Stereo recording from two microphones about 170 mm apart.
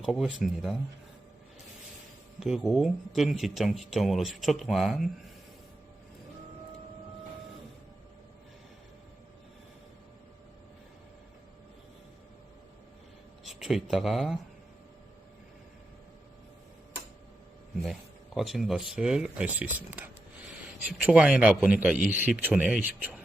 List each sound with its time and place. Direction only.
0.0 s speech: 5° right (ahead or behind)
2.4 s speech: 5° right (ahead or behind)
13.4 s speech: centre (ahead or behind)
18.3 s a man's voice: centre (ahead or behind)